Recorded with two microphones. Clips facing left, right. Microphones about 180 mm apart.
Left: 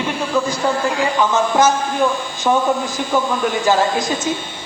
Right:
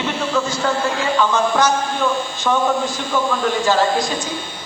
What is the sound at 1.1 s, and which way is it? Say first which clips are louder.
A man's voice: left 1 dB; 20° left (ahead or behind).